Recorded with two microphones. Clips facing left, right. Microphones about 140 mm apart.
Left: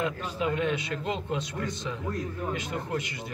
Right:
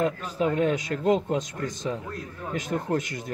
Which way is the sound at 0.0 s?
40° right (ahead or behind).